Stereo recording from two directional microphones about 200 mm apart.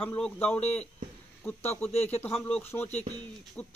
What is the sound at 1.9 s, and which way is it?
Speech, 30° left (ahead or behind).